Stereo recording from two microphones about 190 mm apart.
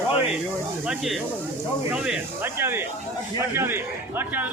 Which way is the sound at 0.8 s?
Centre (ahead or behind).